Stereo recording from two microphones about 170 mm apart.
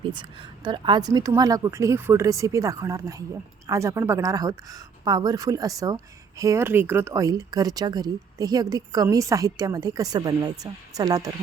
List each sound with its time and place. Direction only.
0.1 s speech: 25° right (ahead or behind)